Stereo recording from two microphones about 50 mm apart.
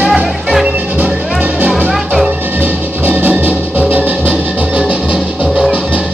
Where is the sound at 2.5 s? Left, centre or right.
Right.